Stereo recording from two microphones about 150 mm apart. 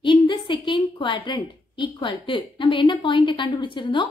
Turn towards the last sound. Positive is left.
turn(degrees=30)  # may be behind; listen again after turning